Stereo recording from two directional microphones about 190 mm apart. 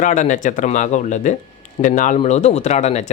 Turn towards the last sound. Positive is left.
turn(degrees=35)  # may be behind; listen again after turning